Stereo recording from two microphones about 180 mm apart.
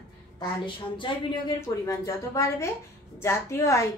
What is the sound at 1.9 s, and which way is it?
A woman's voice, 15° left (ahead or behind).